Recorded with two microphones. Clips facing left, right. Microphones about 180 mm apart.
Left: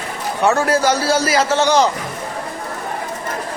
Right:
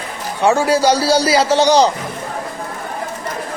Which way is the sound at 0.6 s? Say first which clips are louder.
Right 2 dB; 35° right (ahead or behind).